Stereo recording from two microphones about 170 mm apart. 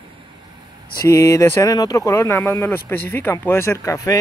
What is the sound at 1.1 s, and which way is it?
Speech, 15° left (ahead or behind).